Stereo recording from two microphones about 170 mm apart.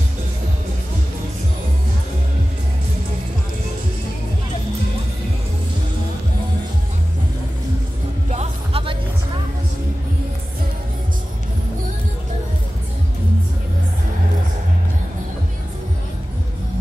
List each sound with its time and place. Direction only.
8.3 s music: 40° right (ahead or behind)